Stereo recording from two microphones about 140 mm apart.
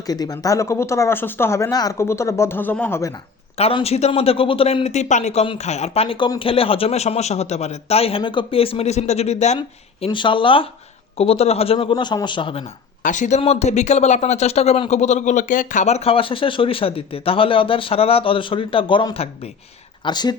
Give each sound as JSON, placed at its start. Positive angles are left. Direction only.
{"t": 0.1, "sound": "speech", "side_deg": 25}
{"t": 3.6, "sound": "a man's voice", "side_deg": 45}
{"t": 9.6, "sound": "a man's voice", "side_deg": 35}
{"t": 13.0, "sound": "speech", "side_deg": 65}
{"t": 13.4, "sound": "a man's voice", "side_deg": 50}
{"t": 20.1, "sound": "a man's voice", "side_deg": 30}